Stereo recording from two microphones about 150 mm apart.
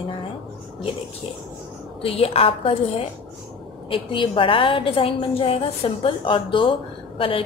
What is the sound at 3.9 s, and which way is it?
A woman's voice, 35° left (ahead or behind).